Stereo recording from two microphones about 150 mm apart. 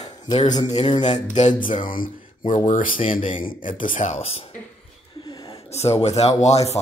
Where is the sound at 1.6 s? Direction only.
60° left (ahead or behind).